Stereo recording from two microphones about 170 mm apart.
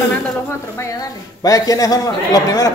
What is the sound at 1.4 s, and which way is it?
A man's voice, 20° left (ahead or behind).